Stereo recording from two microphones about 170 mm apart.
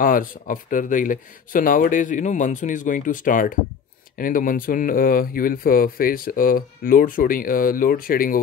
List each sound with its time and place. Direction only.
0.0 s speech: 55° left (ahead or behind)